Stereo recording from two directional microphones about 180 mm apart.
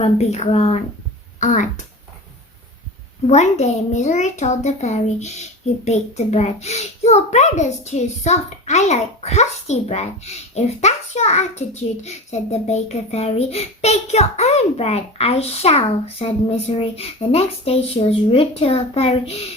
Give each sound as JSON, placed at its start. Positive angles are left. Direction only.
{"t": 0.0, "sound": "a child's voice", "side_deg": 35}
{"t": 3.2, "sound": "a child's voice", "side_deg": 40}